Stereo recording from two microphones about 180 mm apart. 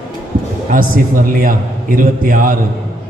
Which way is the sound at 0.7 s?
50° right (ahead or behind).